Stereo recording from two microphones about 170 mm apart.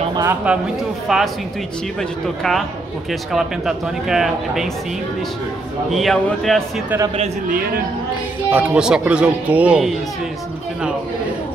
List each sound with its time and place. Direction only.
0.1 s a sound: 20° right (ahead or behind)
1.0 s speech: centre (ahead or behind)
5.9 s speech: centre (ahead or behind)
7.4 s a man's voice: 55° right (ahead or behind)
8.5 s speech: 10° right (ahead or behind)